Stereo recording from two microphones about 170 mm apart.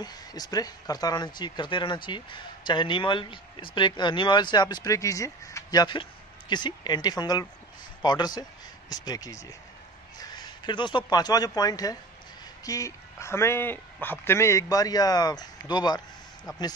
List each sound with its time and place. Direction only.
0.0 s speech: 25° left (ahead or behind)